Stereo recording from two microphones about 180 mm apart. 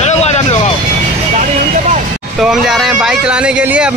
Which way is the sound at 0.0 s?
35° left (ahead or behind).